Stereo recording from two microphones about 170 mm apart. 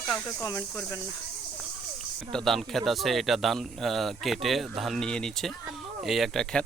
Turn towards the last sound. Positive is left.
turn(degrees=5)  # may be behind; listen again after turning